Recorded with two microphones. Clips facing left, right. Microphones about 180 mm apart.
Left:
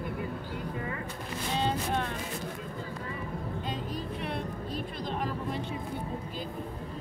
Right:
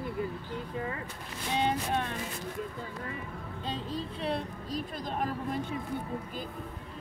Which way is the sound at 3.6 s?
30° right (ahead or behind).